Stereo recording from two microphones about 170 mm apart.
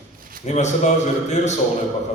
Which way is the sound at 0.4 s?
45° left (ahead or behind).